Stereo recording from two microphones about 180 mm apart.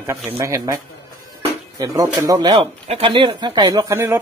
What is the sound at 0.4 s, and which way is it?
Speech, 20° right (ahead or behind).